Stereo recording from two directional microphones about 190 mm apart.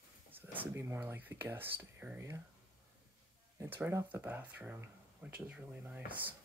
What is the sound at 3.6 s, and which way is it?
Speech, 10° right (ahead or behind).